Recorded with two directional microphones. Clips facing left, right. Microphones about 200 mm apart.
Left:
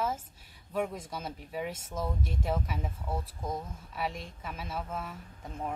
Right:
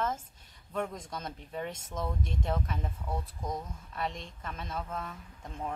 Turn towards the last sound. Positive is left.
turn(degrees=5)  # may be behind; listen again after turning